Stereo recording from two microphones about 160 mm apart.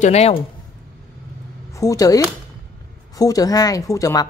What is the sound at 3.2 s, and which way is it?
Speech, 20° left (ahead or behind).